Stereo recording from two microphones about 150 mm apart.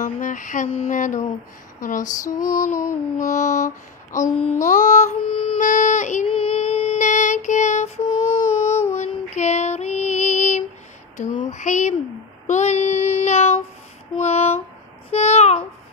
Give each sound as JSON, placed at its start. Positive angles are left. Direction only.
{"t": 0.0, "sound": "mantra", "side_deg": 60}
{"t": 2.8, "sound": "a sound", "side_deg": 20}
{"t": 3.3, "sound": "mantra", "side_deg": 55}
{"t": 5.2, "sound": "music", "side_deg": 35}
{"t": 5.6, "sound": "child singing", "side_deg": 55}
{"t": 6.2, "sound": "child singing", "side_deg": 40}
{"t": 7.0, "sound": "music", "side_deg": 55}
{"t": 8.9, "sound": "female singing", "side_deg": 50}
{"t": 12.4, "sound": "child singing", "side_deg": 50}
{"t": 14.1, "sound": "a sound", "side_deg": 45}
{"t": 15.0, "sound": "babbling", "side_deg": 45}